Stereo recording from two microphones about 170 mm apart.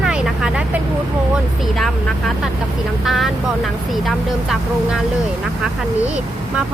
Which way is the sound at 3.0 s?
Centre (ahead or behind).